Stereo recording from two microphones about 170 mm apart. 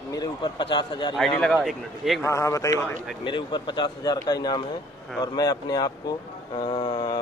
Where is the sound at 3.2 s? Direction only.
30° left (ahead or behind).